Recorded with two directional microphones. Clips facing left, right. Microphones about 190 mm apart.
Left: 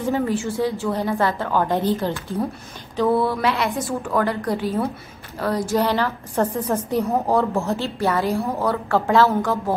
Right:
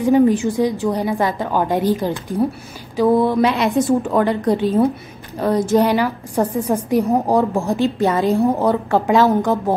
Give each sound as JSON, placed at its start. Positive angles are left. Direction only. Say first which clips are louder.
{"t": 0.0, "sound": "a woman's voice", "louder": "right 8 dB", "side_deg": -15}